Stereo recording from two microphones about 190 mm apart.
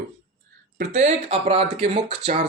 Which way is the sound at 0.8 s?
40° right (ahead or behind).